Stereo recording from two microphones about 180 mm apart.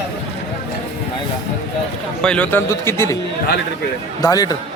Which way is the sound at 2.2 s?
5° left (ahead or behind).